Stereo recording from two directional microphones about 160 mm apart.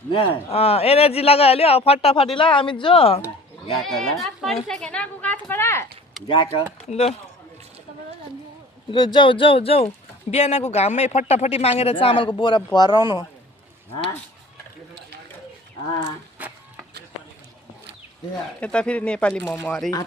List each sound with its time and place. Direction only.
0.1 s speech: 35° left (ahead or behind)
3.8 s a woman's voice: centre (ahead or behind)
6.2 s speech: 30° left (ahead or behind)
8.9 s speech: 30° left (ahead or behind)
16.4 s a sound: 10° right (ahead or behind)
18.6 s speech: 5° left (ahead or behind)